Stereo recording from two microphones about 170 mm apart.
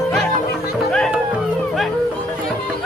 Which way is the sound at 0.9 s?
5° left (ahead or behind).